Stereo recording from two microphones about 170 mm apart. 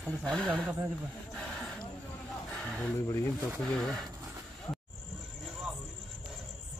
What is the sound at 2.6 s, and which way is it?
Speech, 5° left (ahead or behind).